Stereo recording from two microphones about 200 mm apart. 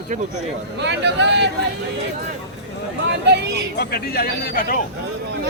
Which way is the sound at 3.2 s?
60° right (ahead or behind).